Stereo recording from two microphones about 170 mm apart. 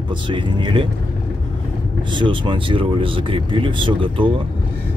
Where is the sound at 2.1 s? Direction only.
30° right (ahead or behind).